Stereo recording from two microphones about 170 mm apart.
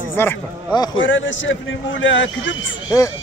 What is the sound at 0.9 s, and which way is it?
A man's voice, 90° left.